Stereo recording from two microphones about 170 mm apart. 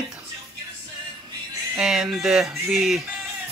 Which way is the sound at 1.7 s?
Centre (ahead or behind).